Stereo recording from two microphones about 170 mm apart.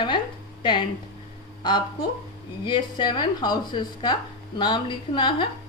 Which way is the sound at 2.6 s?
25° left (ahead or behind).